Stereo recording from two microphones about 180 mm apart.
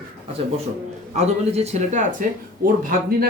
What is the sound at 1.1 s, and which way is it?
A man's voice, 35° right (ahead or behind).